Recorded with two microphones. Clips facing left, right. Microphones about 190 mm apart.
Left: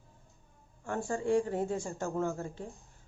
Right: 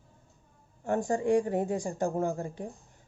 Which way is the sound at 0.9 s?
20° right (ahead or behind).